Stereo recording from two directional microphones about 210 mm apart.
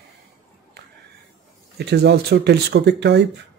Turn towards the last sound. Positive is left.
turn(degrees=-55)  # may be behind; listen again after turning